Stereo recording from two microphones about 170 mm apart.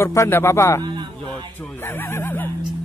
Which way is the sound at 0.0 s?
15° left (ahead or behind).